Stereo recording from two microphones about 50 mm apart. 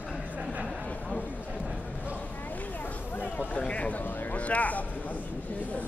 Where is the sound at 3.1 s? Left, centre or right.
Left.